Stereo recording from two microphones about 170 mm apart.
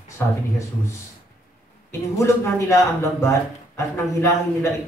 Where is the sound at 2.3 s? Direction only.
15° left (ahead or behind).